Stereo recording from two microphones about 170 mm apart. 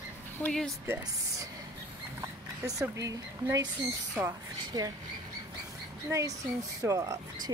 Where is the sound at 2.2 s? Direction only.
20° right (ahead or behind).